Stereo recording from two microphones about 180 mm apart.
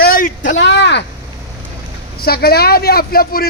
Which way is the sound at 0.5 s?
75° left (ahead or behind).